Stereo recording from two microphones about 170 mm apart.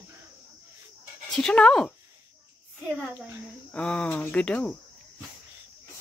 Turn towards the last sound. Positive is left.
turn(degrees=5)  # may be behind; listen again after turning